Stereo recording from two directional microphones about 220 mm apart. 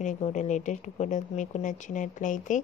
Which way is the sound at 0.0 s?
35° left (ahead or behind).